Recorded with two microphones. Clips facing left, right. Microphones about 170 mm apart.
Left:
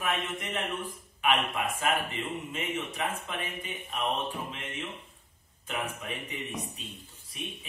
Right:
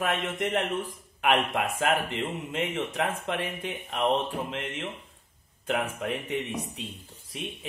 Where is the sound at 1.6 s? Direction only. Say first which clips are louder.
Right 3 dB; 75° right (ahead or behind).